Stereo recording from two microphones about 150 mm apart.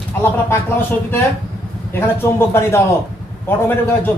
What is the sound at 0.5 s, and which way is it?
A man's voice, 15° left (ahead or behind).